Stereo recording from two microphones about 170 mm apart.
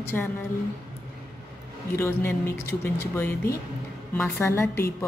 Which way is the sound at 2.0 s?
15° left (ahead or behind).